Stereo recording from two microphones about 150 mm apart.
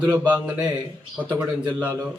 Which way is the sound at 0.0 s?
15° right (ahead or behind).